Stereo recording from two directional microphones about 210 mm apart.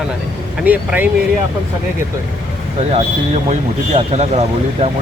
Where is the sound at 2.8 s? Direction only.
30° right (ahead or behind).